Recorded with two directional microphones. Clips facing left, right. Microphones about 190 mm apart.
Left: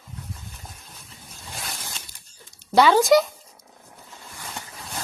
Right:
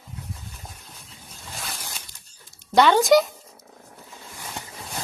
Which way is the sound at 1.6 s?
Centre (ahead or behind).